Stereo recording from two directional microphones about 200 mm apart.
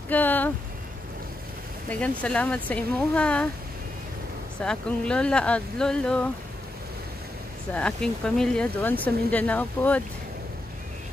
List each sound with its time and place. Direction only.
0.1 s speech: 10° left (ahead or behind)
1.9 s speech: 5° left (ahead or behind)
4.6 s speech: 5° left (ahead or behind)
7.7 s speech: 5° left (ahead or behind)